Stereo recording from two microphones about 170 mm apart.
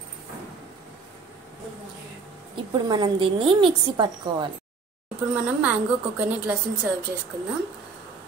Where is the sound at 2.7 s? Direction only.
25° right (ahead or behind).